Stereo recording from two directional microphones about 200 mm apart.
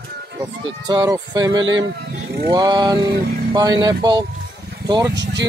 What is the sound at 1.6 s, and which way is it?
Speech, 70° right (ahead or behind).